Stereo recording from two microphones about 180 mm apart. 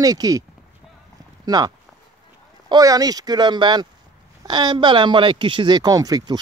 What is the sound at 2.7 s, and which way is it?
A man's voice, 20° right (ahead or behind).